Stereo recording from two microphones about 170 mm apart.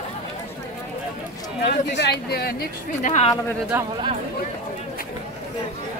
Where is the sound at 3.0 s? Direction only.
40° left (ahead or behind).